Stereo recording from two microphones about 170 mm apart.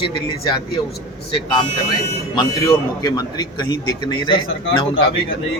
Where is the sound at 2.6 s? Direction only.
25° left (ahead or behind).